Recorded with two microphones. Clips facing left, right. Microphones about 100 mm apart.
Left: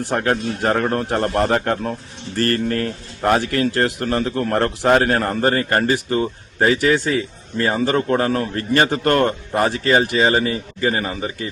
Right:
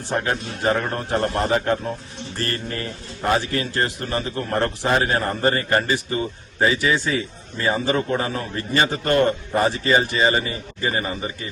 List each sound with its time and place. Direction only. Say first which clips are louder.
0.3 s speech: left 4 dB; 55° left (ahead or behind)